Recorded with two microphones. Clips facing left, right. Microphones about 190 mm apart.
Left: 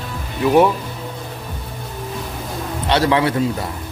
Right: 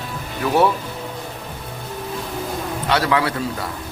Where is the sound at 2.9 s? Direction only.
25° left (ahead or behind).